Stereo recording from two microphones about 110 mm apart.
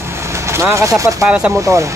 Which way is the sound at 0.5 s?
25° right (ahead or behind).